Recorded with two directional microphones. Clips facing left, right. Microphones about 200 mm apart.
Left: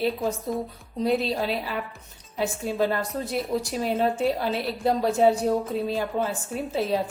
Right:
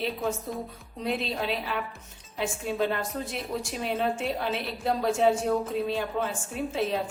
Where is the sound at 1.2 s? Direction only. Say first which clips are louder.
Left 4 dB; 40° left (ahead or behind).